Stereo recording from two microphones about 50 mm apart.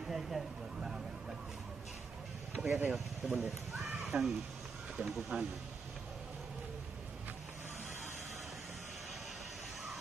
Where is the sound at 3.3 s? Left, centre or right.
Centre.